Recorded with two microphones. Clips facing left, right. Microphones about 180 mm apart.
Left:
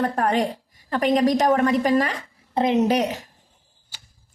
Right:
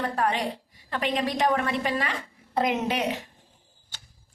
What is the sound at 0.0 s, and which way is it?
A woman's voice, 45° left (ahead or behind).